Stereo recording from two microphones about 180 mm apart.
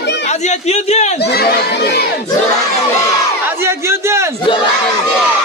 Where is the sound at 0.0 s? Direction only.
70° left (ahead or behind).